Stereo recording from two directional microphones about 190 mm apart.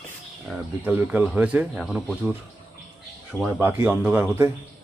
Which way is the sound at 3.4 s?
10° right (ahead or behind).